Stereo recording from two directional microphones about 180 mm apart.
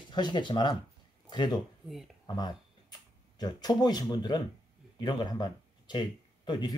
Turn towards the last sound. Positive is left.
turn(degrees=25)  # may be behind; listen again after turning